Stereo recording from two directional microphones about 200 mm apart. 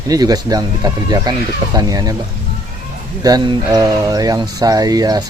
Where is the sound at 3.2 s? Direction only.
20° right (ahead or behind).